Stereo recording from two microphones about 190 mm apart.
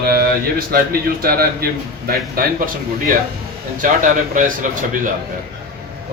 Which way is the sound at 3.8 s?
45° right (ahead or behind).